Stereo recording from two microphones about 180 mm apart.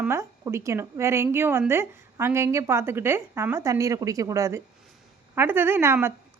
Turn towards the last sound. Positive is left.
turn(degrees=-10)  # may be behind; listen again after turning